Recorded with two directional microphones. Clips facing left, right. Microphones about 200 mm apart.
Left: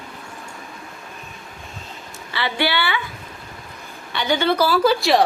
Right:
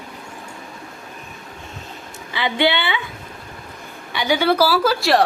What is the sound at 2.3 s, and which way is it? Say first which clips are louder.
Speech: right 3 dB; 20° right (ahead or behind).